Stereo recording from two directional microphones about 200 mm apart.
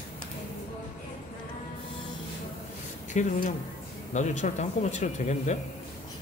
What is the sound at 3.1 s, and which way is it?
Speech, 35° left (ahead or behind).